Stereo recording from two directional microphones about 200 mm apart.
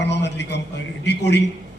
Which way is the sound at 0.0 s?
60° left (ahead or behind).